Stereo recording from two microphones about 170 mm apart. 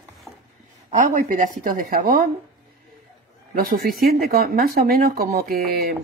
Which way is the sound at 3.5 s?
60° right (ahead or behind).